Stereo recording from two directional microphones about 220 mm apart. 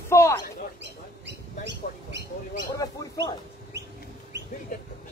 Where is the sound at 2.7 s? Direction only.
15° left (ahead or behind).